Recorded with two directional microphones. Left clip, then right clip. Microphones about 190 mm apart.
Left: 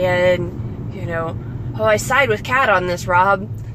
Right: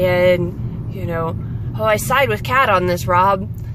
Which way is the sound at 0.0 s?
15° right (ahead or behind).